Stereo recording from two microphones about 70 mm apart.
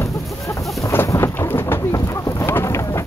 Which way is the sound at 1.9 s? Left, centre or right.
Left.